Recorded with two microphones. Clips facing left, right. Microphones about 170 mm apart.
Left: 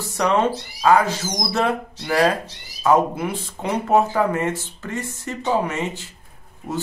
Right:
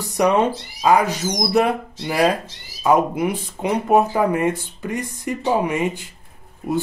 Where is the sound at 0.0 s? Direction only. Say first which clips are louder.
Right 2 dB; 15° right (ahead or behind).